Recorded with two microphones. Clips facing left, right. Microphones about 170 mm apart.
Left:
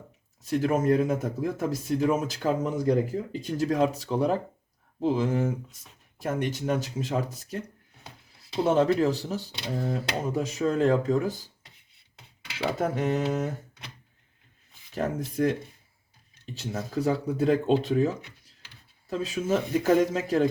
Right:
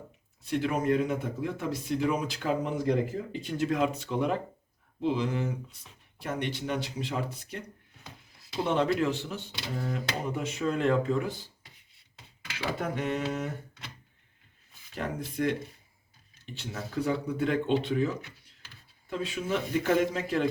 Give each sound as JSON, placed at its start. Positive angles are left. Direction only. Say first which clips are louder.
{"t": 0.4, "sound": "speech", "louder": "left 4 dB", "side_deg": 40}
{"t": 8.6, "sound": "speech", "louder": "left 4 dB", "side_deg": 40}
{"t": 12.8, "sound": "speech", "louder": "left 5 dB", "side_deg": 40}
{"t": 14.9, "sound": "speech", "louder": "left 5 dB", "side_deg": 45}
{"t": 16.6, "sound": "speech", "louder": "left 3 dB", "side_deg": 40}